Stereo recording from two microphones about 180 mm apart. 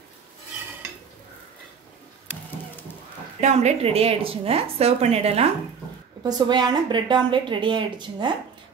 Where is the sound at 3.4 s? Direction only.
40° right (ahead or behind).